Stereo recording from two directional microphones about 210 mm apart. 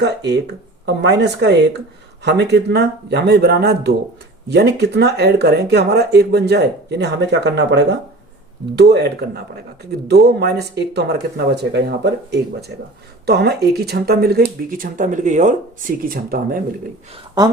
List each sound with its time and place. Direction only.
0.0 s speech: 55° right (ahead or behind)